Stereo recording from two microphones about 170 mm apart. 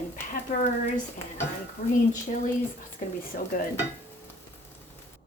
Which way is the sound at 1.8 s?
40° left (ahead or behind).